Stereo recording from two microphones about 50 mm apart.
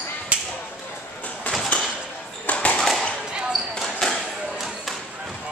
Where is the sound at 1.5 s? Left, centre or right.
Left.